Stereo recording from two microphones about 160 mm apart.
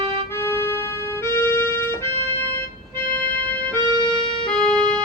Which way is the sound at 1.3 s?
15° left (ahead or behind).